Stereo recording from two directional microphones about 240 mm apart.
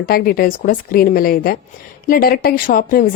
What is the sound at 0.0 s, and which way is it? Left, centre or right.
Speech, left.